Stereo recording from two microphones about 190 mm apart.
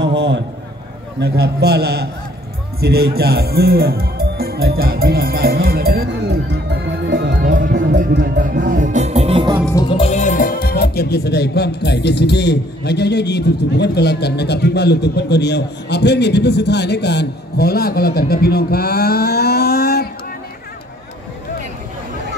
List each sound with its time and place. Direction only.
0.0 s a sound: 70° right (ahead or behind)
1.2 s a man's voice: 60° right (ahead or behind); by 9.5 s 30° right (ahead or behind)
9.8 s speech: 30° left (ahead or behind); by 20.1 s 55° left (ahead or behind)